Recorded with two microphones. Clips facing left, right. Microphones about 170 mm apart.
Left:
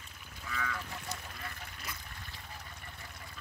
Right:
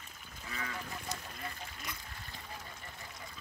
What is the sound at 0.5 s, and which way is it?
Goose, 35° right (ahead or behind).